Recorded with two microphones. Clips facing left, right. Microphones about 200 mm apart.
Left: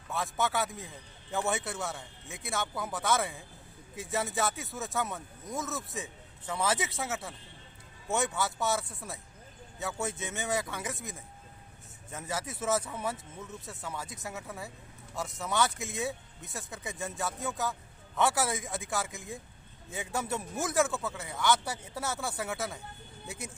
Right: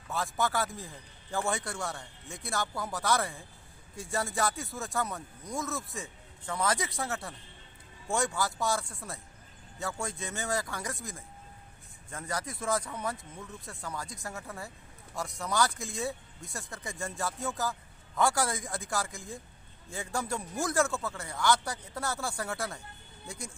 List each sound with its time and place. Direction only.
0.1 s speech: centre (ahead or behind)
10.1 s speech: 20° left (ahead or behind)
10.4 s speech: centre (ahead or behind)